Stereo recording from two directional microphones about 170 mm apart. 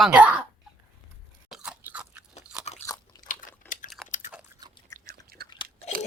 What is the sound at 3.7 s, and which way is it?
Chewing, 50° left (ahead or behind).